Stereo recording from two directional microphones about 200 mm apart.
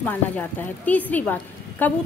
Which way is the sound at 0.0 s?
10° left (ahead or behind).